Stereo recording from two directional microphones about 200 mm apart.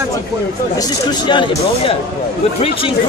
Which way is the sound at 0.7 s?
20° left (ahead or behind).